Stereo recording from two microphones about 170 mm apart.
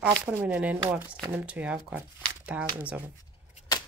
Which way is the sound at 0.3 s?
10° right (ahead or behind).